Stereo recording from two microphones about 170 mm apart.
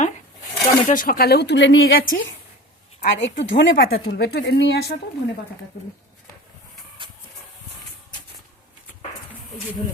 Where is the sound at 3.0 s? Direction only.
90° left.